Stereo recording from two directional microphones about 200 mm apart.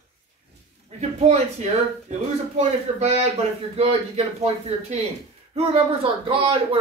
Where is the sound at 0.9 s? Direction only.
35° right (ahead or behind).